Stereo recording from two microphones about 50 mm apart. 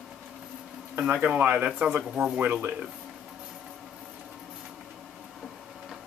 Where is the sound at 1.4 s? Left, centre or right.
Right.